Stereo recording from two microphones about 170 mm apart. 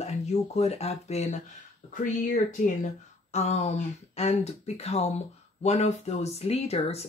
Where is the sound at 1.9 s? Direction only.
50° left (ahead or behind).